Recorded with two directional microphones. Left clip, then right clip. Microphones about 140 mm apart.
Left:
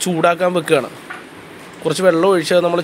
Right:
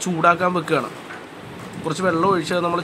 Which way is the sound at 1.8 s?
35° left (ahead or behind).